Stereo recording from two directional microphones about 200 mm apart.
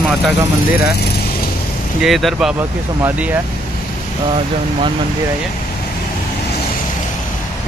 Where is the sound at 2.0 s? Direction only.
Centre (ahead or behind).